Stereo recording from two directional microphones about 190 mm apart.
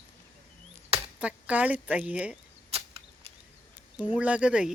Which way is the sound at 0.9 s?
5° right (ahead or behind).